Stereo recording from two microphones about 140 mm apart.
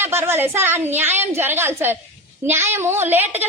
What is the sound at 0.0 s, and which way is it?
A woman's voice, 15° right (ahead or behind).